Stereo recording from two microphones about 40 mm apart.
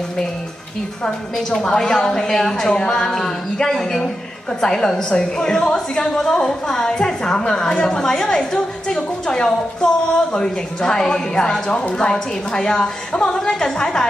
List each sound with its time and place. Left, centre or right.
1.5 s a woman's voice: centre